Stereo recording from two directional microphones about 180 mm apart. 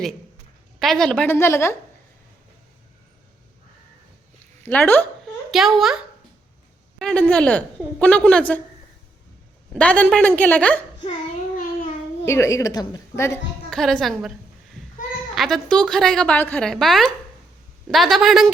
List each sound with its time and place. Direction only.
0.8 s a woman's voice: centre (ahead or behind)
4.6 s a woman's voice: 10° left (ahead or behind)
7.0 s a woman's voice: 5° left (ahead or behind)
9.7 s a woman's voice: 5° left (ahead or behind)
12.2 s a woman's voice: 15° left (ahead or behind)
13.7 s a woman's voice: centre (ahead or behind)
15.4 s a woman's voice: centre (ahead or behind)